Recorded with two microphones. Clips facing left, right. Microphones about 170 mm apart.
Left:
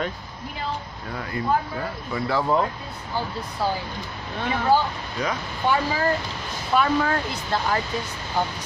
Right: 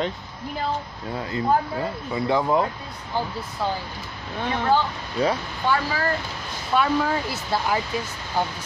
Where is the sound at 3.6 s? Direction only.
Centre (ahead or behind).